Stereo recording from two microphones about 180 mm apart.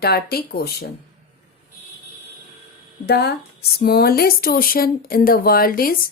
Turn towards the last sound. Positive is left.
turn(degrees=55)  # may be behind; listen again after turning